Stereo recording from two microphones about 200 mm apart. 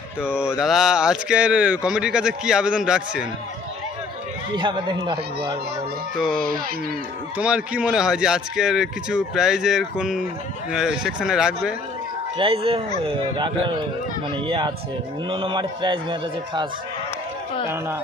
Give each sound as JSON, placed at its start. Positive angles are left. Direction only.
{"t": 0.2, "sound": "speech", "side_deg": -5}
{"t": 4.5, "sound": "a man's voice", "side_deg": -25}
{"t": 6.1, "sound": "speech", "side_deg": 0}
{"t": 12.4, "sound": "a man's voice", "side_deg": -25}